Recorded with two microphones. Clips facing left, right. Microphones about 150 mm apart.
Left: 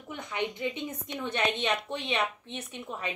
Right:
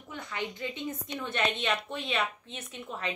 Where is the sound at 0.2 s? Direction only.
20° left (ahead or behind).